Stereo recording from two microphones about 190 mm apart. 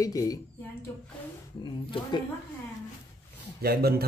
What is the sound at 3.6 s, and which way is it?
Speech, 55° right (ahead or behind).